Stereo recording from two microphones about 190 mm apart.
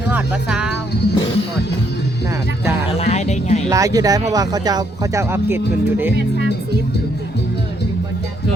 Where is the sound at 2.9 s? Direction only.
35° left (ahead or behind).